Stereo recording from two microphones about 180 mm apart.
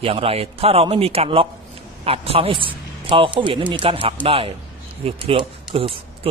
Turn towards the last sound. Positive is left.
turn(degrees=-30)  # may be behind; listen again after turning